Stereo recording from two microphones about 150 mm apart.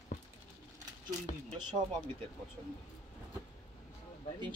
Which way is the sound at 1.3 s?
60° left (ahead or behind).